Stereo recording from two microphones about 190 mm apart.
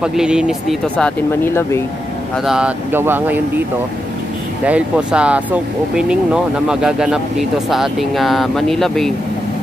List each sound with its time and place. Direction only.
0.0 s speech: 5° right (ahead or behind); by 1.8 s 10° left (ahead or behind)
2.4 s speech: 5° right (ahead or behind)
4.6 s speech: 5° right (ahead or behind)